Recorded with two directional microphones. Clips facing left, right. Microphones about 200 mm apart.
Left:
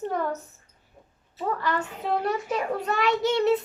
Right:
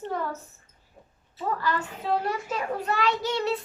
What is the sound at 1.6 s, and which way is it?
A child's voice, 20° left (ahead or behind).